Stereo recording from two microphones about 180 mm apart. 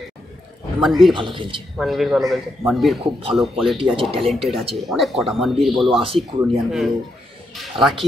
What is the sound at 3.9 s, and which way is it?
Speech, 30° right (ahead or behind).